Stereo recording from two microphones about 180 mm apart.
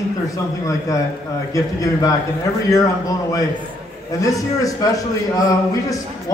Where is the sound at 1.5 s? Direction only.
20° left (ahead or behind).